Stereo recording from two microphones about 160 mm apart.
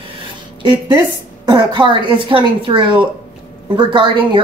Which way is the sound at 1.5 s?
30° right (ahead or behind).